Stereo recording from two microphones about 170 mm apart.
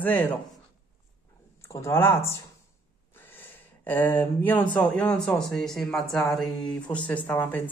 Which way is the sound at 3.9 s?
10° left (ahead or behind).